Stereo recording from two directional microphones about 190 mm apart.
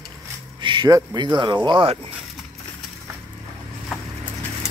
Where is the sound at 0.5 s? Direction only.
25° right (ahead or behind).